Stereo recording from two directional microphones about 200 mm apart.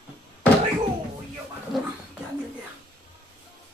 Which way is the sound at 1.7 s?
Centre (ahead or behind).